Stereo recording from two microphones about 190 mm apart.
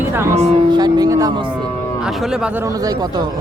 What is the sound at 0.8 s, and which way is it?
Speech, 20° right (ahead or behind).